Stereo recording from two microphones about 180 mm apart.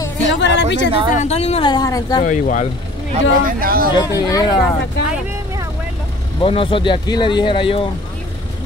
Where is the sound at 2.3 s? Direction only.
45° left (ahead or behind).